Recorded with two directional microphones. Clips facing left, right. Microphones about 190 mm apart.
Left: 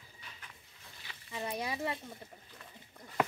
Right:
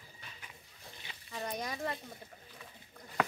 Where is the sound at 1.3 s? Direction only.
10° left (ahead or behind).